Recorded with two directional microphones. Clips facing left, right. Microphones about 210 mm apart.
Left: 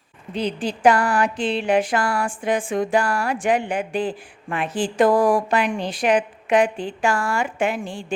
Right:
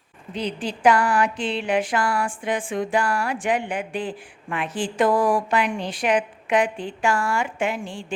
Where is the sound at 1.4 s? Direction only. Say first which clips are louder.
Left 3 dB; 40° left (ahead or behind).